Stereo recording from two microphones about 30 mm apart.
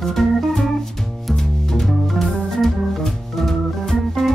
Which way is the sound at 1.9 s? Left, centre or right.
Centre.